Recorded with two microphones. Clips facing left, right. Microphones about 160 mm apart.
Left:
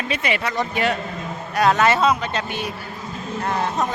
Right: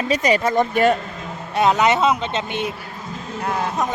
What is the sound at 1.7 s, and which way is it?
Speech, 20° right (ahead or behind).